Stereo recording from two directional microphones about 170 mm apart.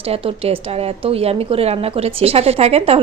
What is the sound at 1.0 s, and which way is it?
A woman's voice, 35° right (ahead or behind).